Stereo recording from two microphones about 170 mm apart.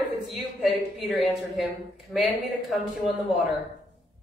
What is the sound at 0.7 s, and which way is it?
A woman's voice, centre (ahead or behind).